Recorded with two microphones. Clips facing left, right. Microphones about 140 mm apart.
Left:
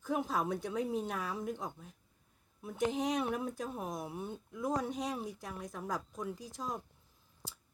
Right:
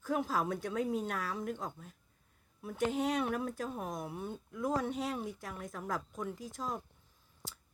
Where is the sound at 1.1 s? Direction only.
10° left (ahead or behind).